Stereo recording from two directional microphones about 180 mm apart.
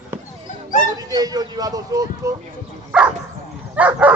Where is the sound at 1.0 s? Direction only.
20° right (ahead or behind).